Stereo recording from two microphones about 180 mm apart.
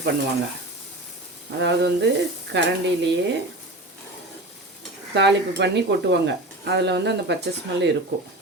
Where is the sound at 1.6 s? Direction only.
70° right (ahead or behind).